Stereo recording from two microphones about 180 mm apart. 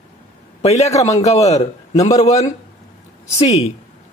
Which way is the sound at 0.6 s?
40° left (ahead or behind).